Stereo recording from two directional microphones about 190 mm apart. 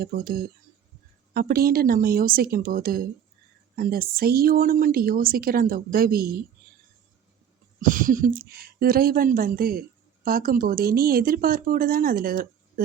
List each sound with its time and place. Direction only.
0.0 s speech: 50° right (ahead or behind)
7.8 s speech: 45° right (ahead or behind)